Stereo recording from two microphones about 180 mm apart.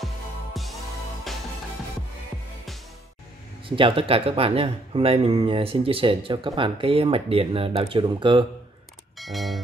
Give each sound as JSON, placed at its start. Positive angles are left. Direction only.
{"t": 0.0, "sound": "music", "side_deg": 0}
{"t": 3.6, "sound": "speech", "side_deg": -30}
{"t": 9.2, "sound": "speech", "side_deg": 0}